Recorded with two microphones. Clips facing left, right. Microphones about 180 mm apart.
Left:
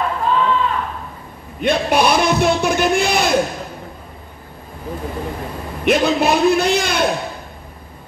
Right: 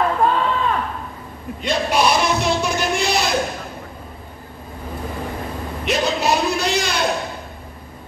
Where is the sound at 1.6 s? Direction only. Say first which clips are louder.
Left 3 dB; 55° left (ahead or behind).